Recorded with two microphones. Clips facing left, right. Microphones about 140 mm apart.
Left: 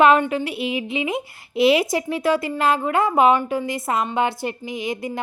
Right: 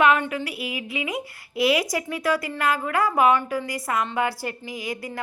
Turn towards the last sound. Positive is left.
turn(degrees=20)  # may be behind; listen again after turning